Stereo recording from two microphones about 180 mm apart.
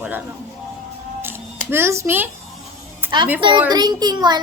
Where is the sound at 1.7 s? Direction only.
15° right (ahead or behind).